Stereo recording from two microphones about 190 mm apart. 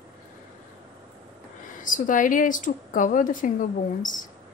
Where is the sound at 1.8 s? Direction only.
45° left (ahead or behind).